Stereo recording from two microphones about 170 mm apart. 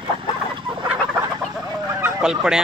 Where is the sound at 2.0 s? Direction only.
5° right (ahead or behind).